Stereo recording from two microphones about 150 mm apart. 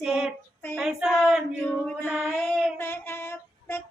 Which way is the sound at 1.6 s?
10° left (ahead or behind).